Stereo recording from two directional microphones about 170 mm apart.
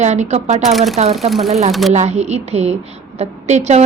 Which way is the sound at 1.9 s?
40° right (ahead or behind).